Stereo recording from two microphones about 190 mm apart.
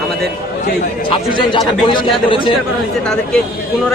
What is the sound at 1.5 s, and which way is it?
Speech, 25° left (ahead or behind).